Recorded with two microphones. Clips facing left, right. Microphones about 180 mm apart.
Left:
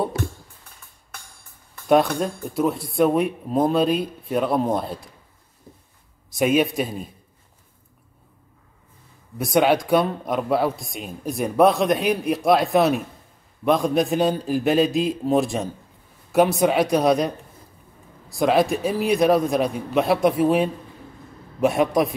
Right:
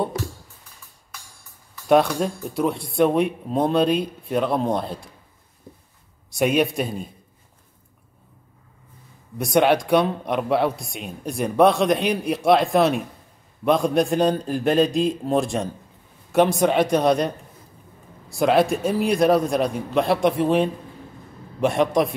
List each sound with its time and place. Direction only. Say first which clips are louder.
1.1 s music: left 2 dB; 55° left (ahead or behind)
1.9 s speech: even; centre (ahead or behind)
6.3 s speech: left 1 dB; centre (ahead or behind)
9.4 s speech: even; centre (ahead or behind)
18.4 s speech: right 1 dB; centre (ahead or behind)